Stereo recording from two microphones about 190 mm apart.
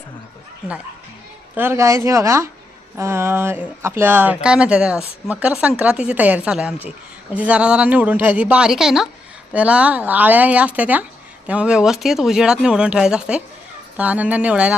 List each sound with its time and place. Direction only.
1.5 s speech: 15° right (ahead or behind)